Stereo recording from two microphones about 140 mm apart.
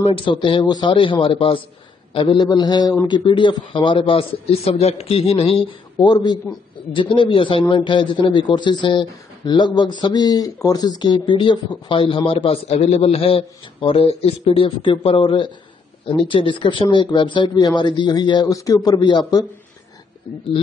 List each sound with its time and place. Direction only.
0.0 s a man's voice: 40° left (ahead or behind)